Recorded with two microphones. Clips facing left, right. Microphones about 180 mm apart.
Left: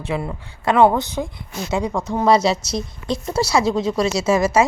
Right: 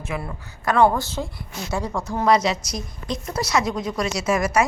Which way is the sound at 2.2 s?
30° left (ahead or behind).